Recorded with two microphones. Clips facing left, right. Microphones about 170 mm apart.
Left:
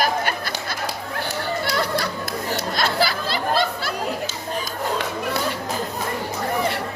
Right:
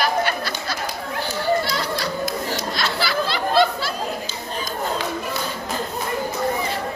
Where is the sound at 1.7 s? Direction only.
55° left (ahead or behind).